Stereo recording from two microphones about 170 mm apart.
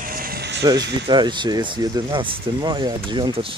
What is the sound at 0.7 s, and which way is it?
Speech, 25° right (ahead or behind).